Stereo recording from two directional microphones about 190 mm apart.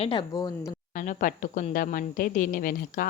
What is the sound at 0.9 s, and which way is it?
A woman's voice, 45° left (ahead or behind).